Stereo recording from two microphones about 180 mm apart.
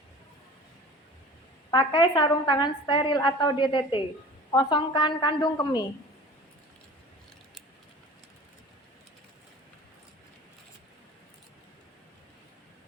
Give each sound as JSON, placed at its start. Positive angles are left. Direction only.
{"t": 1.7, "sound": "a woman's voice", "side_deg": 25}